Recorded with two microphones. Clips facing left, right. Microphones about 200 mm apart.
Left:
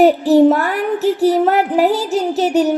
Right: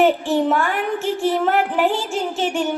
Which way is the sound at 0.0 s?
40° left (ahead or behind).